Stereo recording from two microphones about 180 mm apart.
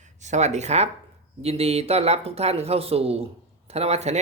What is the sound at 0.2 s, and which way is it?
Speech, 40° right (ahead or behind).